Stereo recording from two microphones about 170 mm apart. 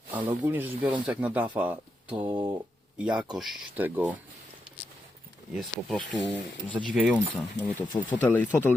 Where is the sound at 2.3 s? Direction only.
25° right (ahead or behind).